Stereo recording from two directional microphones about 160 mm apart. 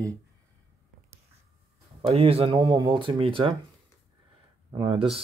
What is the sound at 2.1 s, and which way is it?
Speech, 35° right (ahead or behind).